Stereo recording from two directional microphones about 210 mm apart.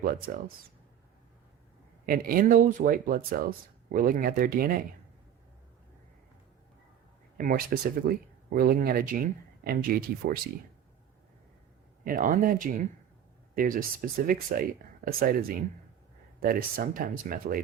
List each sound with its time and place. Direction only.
0.0 s speech: 45° right (ahead or behind)
2.0 s speech: 45° right (ahead or behind)
7.3 s speech: 40° right (ahead or behind)
12.0 s speech: 40° right (ahead or behind)